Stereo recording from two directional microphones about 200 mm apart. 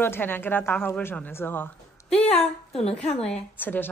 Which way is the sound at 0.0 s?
10° left (ahead or behind).